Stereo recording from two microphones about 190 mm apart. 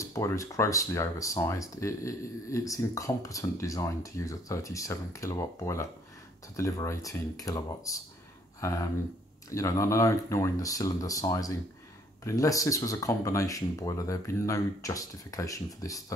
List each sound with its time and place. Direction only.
0.0 s speech: 15° left (ahead or behind)